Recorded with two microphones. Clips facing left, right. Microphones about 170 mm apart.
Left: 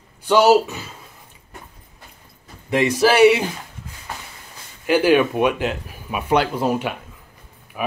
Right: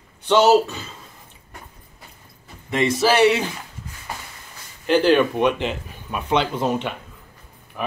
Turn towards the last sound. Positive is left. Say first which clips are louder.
# left 2 dB
turn(degrees=10)  # may be behind; listen again after turning